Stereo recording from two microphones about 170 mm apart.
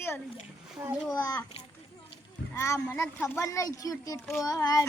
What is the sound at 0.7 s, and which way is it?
Speech, 10° right (ahead or behind).